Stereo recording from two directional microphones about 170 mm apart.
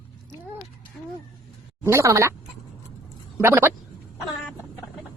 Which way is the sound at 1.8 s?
15° right (ahead or behind).